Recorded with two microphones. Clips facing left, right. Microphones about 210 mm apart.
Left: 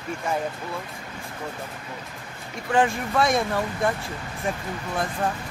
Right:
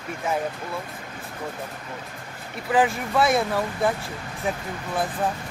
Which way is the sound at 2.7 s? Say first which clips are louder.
Even; centre (ahead or behind).